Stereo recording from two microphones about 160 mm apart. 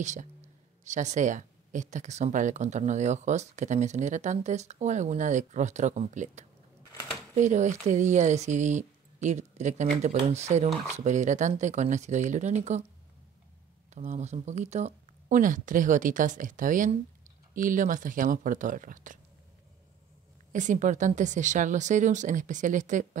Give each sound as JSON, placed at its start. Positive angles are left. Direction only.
{"t": 0.0, "sound": "speech", "side_deg": -50}
{"t": 13.9, "sound": "speech", "side_deg": -45}
{"t": 20.5, "sound": "speech", "side_deg": -50}